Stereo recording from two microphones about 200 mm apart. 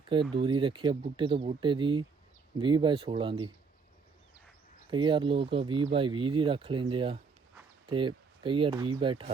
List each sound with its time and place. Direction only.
0.3 s speech: 25° right (ahead or behind)
4.9 s speech: 25° right (ahead or behind)